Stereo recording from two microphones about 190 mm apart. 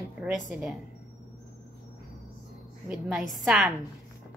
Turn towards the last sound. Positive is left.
turn(degrees=0)  # may be behind; listen again after turning